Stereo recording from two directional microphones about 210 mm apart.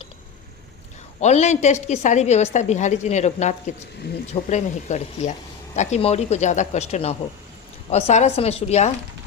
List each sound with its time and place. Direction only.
1.2 s a woman's voice: 35° left (ahead or behind)